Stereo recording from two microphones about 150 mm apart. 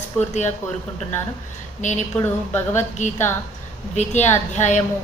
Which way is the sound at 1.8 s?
50° left (ahead or behind).